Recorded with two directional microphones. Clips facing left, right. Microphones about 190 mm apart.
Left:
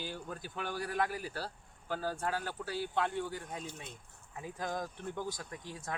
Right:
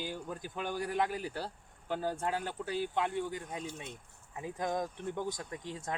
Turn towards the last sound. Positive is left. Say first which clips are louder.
# right 3 dB
turn(degrees=-20)  # may be behind; listen again after turning